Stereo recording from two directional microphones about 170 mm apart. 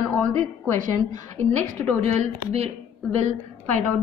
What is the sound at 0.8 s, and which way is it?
A woman's voice, 45° right (ahead or behind).